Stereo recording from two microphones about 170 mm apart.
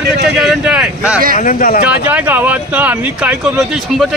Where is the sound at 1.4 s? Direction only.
50° left (ahead or behind).